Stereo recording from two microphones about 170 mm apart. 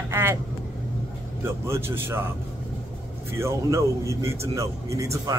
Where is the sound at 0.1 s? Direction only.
15° right (ahead or behind).